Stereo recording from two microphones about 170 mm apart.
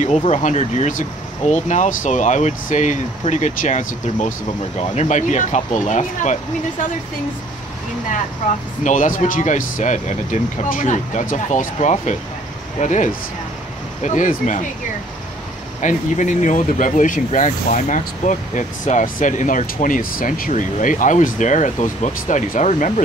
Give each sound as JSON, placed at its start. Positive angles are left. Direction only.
{"t": 0.0, "sound": "speech", "side_deg": 40}
{"t": 8.8, "sound": "speech", "side_deg": 50}
{"t": 15.8, "sound": "speech", "side_deg": 45}